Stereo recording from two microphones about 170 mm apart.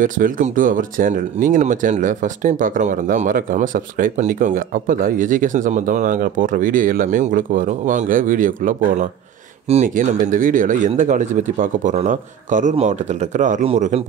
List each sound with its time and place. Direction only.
0.0 s a man's voice: 50° right (ahead or behind)